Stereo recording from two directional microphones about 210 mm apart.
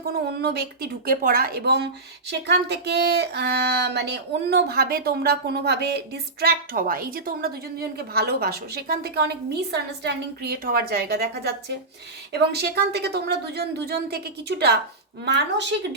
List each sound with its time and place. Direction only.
0.3 s a woman's voice: 50° right (ahead or behind)